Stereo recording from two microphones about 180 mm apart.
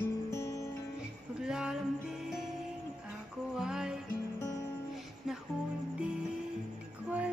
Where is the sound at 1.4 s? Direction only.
5° right (ahead or behind).